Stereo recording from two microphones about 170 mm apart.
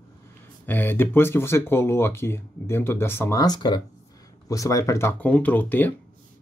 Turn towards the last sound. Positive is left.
turn(degrees=10)  # may be behind; listen again after turning